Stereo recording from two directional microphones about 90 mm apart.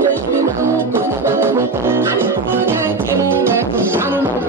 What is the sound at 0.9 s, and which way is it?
Music, 25° right (ahead or behind).